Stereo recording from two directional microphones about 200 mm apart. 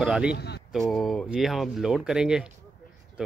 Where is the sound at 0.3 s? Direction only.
55° left (ahead or behind).